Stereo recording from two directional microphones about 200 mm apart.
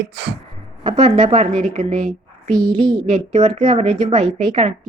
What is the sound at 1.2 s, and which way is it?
A woman's voice, 35° right (ahead or behind).